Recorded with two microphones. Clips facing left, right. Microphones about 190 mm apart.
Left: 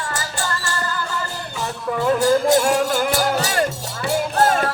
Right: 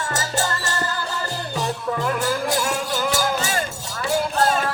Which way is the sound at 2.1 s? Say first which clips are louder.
Left 8 dB; 30° left (ahead or behind).